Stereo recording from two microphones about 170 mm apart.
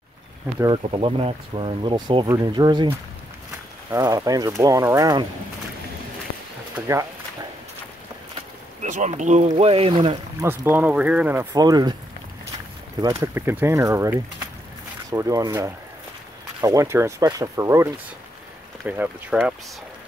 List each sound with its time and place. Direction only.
0.6 s speech: 30° right (ahead or behind)
3.9 s speech: 20° right (ahead or behind)
8.8 s speech: 45° right (ahead or behind)
10.4 s speech: 15° right (ahead or behind)
11.5 s speech: 25° right (ahead or behind)
13.0 s speech: 20° right (ahead or behind)
18.9 s speech: 10° right (ahead or behind)